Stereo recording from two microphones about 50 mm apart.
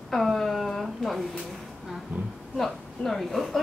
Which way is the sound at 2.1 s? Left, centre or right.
Right.